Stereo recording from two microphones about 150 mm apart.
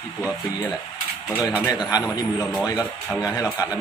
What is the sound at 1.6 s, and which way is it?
Speech, 25° left (ahead or behind).